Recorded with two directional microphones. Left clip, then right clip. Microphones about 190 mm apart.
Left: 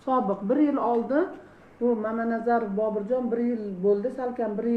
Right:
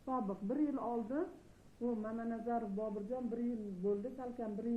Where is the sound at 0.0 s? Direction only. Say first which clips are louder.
Left 15 dB; 15° left (ahead or behind).